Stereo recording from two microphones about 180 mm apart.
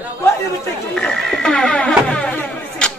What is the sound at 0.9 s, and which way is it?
Music, 5° left (ahead or behind).